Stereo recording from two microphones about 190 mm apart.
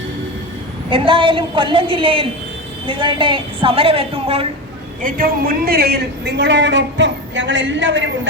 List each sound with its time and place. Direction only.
0.9 s a woman's voice: 25° right (ahead or behind)
5.0 s a woman's voice: 50° right (ahead or behind); by 8.3 s 75° right (ahead or behind)